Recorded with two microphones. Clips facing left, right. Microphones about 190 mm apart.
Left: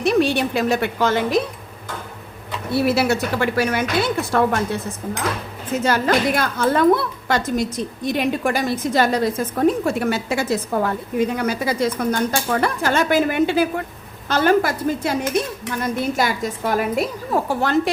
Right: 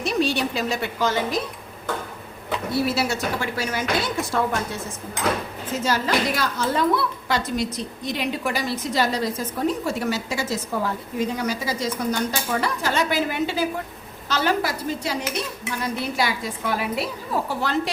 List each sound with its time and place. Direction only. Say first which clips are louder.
0.0 s a woman's voice: left 5 dB; 55° left (ahead or behind)
2.8 s a woman's voice: left 5 dB; 60° left (ahead or behind)
5.8 s a woman's voice: left 4 dB; 55° left (ahead or behind)
14.3 s dishes: left 6 dB; 50° left (ahead or behind)